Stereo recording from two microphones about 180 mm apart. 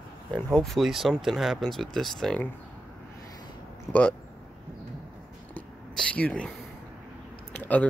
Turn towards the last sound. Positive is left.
turn(degrees=10)  # may be behind; listen again after turning